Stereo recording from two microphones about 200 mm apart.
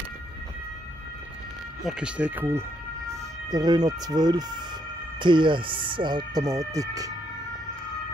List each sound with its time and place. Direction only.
1.9 s speech: 5° right (ahead or behind)